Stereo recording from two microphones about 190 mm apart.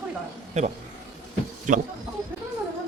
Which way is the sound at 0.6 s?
35° right (ahead or behind).